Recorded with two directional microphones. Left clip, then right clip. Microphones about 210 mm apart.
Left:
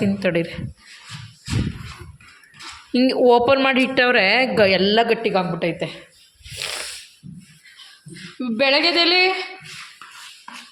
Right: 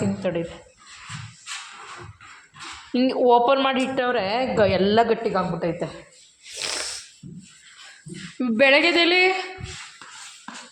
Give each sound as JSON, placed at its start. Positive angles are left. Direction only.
{"t": 0.0, "sound": "speech", "side_deg": 20}
{"t": 2.9, "sound": "a woman's voice", "side_deg": 10}
{"t": 6.5, "sound": "snake", "side_deg": -10}
{"t": 8.4, "sound": "a sound", "side_deg": -10}